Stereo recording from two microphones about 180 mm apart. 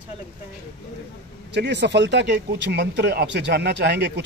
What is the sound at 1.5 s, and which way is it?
Speech, 70° right (ahead or behind).